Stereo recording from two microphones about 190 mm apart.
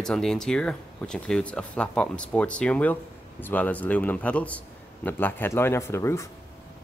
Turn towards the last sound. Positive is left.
turn(degrees=15)  # may be behind; listen again after turning